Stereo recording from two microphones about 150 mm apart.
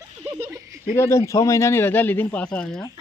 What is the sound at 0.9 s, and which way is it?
A man's voice, 20° left (ahead or behind).